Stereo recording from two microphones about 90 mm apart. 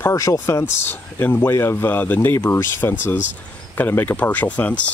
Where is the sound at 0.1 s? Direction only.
40° left (ahead or behind).